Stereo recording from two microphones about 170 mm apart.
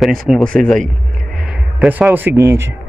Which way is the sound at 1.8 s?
10° right (ahead or behind).